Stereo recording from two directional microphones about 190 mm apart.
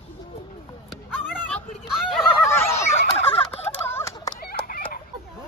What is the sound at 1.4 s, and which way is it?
Speech, 5° left (ahead or behind).